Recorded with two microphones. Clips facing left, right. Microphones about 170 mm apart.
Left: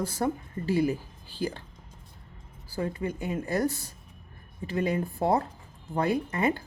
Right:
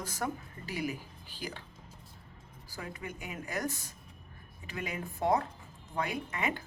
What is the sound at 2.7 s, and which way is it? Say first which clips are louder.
Speech: left 11 dB; 30° left (ahead or behind).